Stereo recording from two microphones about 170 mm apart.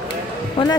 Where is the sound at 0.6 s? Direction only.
30° left (ahead or behind).